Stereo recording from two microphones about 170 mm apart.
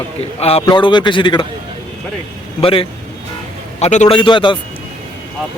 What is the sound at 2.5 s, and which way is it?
Speech, 30° left (ahead or behind).